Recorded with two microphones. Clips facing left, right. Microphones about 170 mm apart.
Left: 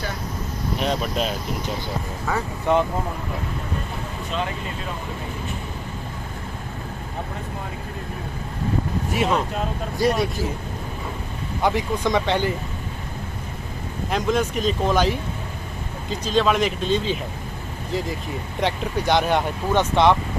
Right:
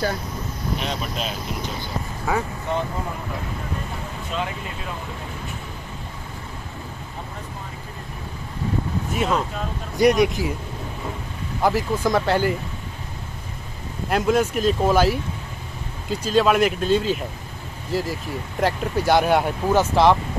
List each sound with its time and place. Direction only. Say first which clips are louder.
0.7 s speech: left 6 dB; 45° left (ahead or behind)
2.3 s speech: right 2 dB; 10° right (ahead or behind)
9.1 s speech: left 1 dB; centre (ahead or behind)
9.9 s speech: right 5 dB; 15° right (ahead or behind)
11.6 s speech: right 1 dB; centre (ahead or behind)
14.1 s speech: right 3 dB; 5° right (ahead or behind)